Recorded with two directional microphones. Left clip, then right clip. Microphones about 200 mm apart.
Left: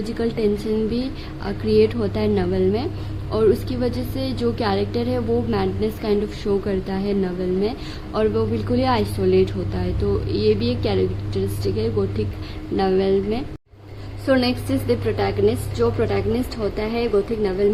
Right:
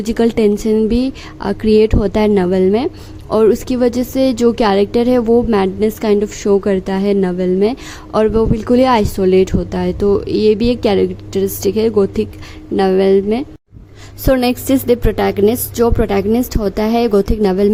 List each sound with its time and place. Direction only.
0.0 s speech: 50° right (ahead or behind)